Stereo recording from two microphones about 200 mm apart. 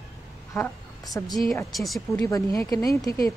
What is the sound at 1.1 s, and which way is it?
Speech, 10° left (ahead or behind).